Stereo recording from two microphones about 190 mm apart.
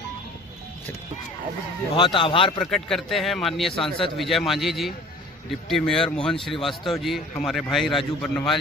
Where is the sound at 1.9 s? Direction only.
25° left (ahead or behind).